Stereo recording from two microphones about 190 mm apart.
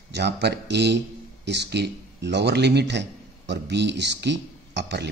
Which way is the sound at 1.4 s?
65° right (ahead or behind).